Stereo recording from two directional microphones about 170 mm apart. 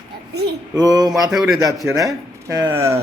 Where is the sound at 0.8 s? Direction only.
20° right (ahead or behind).